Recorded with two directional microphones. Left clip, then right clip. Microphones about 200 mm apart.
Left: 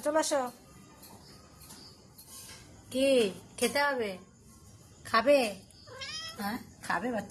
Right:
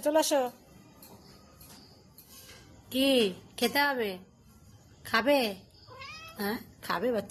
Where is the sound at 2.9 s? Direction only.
35° right (ahead or behind).